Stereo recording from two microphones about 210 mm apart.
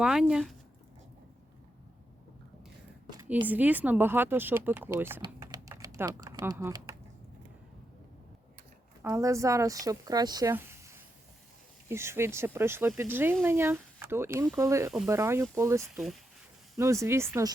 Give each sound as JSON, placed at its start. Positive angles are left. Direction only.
{"t": 0.0, "sound": "speech", "side_deg": -5}
{"t": 3.1, "sound": "speech", "side_deg": -15}
{"t": 5.2, "sound": "typing", "side_deg": -15}
{"t": 9.0, "sound": "speech", "side_deg": -15}